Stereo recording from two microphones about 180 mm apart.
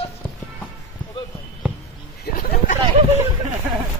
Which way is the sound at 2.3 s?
55° left (ahead or behind).